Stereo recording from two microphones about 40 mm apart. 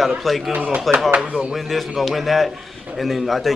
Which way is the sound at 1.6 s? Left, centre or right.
Centre.